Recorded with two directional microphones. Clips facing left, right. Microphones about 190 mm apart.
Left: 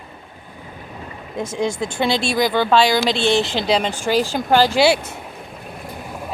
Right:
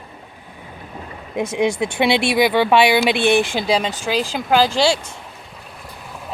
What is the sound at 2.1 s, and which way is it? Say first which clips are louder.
Speech: right 3 dB; 65° right (ahead or behind).